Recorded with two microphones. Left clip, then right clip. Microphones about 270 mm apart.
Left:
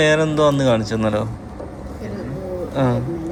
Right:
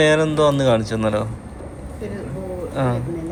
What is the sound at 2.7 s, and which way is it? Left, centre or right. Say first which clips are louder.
Speech: left 3 dB; centre.